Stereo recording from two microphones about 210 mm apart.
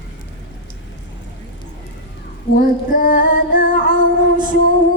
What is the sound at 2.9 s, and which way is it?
Female singing, 40° left (ahead or behind).